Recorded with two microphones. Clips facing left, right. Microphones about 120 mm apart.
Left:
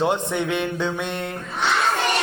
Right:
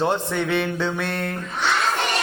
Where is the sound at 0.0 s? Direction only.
10° left (ahead or behind).